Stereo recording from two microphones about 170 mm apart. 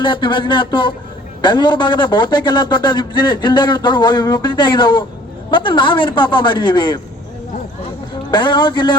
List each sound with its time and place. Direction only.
0.0 s a man's voice: 30° left (ahead or behind)
8.3 s a man's voice: 25° left (ahead or behind)